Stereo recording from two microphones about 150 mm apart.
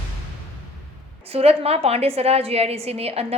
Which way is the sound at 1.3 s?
40° right (ahead or behind).